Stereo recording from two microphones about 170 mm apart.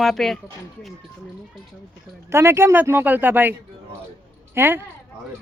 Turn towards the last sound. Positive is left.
turn(degrees=-10)  # may be behind; listen again after turning